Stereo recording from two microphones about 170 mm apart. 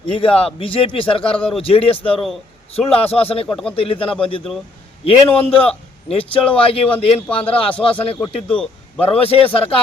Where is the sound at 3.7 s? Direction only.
35° left (ahead or behind).